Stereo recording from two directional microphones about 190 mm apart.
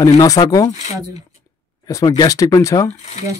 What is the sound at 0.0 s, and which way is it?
Speech, 20° left (ahead or behind).